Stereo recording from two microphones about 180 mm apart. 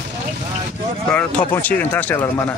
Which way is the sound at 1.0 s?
5° left (ahead or behind).